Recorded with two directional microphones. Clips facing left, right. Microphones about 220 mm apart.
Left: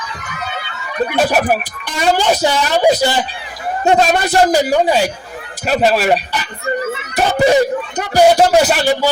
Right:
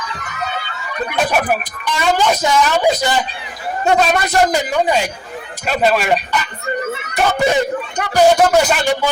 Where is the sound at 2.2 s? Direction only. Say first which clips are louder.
Even; 30° left (ahead or behind).